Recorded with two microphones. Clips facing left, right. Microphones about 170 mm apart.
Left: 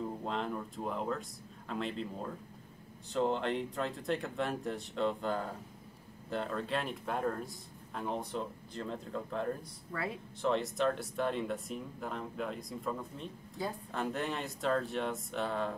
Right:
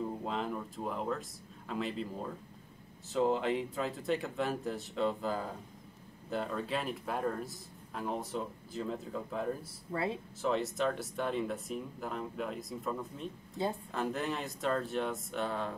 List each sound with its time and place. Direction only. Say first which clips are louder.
0.2 s a man's voice: even; 5° right (ahead or behind)
9.9 s speech: right 4 dB; 25° right (ahead or behind)
10.4 s a man's voice: left 1 dB; centre (ahead or behind)